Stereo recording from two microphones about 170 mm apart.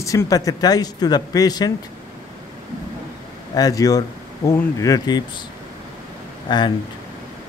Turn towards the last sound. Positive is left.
turn(degrees=25)  # may be behind; listen again after turning